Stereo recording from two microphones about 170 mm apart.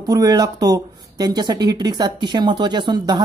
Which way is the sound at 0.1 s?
20° right (ahead or behind).